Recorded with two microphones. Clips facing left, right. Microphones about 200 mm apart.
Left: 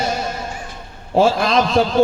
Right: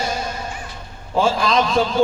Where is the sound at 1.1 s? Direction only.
55° left (ahead or behind).